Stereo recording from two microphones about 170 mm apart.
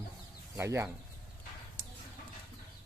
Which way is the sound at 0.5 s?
15° right (ahead or behind).